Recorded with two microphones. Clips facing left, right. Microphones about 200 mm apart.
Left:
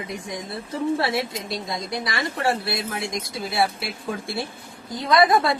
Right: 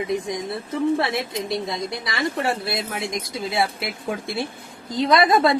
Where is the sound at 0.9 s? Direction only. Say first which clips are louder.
Right 1 dB; 25° right (ahead or behind).